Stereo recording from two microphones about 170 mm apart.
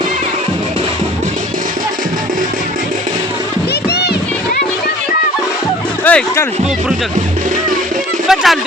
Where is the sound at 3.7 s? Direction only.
75° left (ahead or behind).